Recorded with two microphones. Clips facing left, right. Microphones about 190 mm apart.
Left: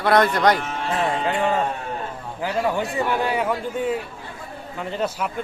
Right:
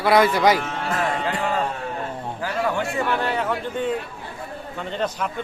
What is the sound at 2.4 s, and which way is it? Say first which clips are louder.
A man's voice: left 2 dB; 15° left (ahead or behind).